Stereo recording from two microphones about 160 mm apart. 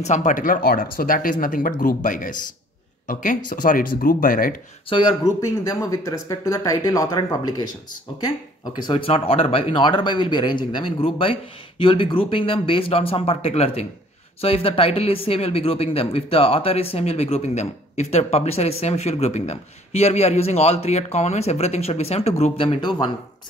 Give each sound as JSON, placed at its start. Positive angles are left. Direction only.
{"t": 0.0, "sound": "speech", "side_deg": 50}
{"t": 4.8, "sound": "speech", "side_deg": 30}
{"t": 5.6, "sound": "speech", "side_deg": 20}
{"t": 8.7, "sound": "speech", "side_deg": 30}